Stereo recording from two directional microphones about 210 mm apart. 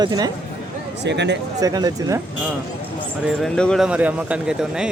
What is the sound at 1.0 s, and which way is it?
Speech, 55° right (ahead or behind).